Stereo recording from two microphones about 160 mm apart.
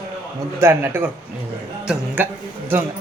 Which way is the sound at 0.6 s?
15° right (ahead or behind).